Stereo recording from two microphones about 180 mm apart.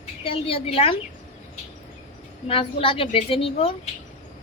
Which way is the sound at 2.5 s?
30° left (ahead or behind).